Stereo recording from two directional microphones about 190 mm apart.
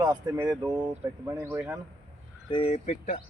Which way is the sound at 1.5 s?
5° right (ahead or behind).